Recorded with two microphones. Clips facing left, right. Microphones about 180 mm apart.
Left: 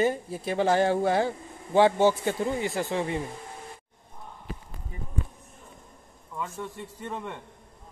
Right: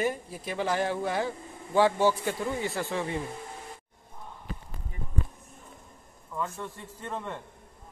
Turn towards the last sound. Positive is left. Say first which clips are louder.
# left 1 dB
turn(degrees=10)  # may be behind; listen again after turning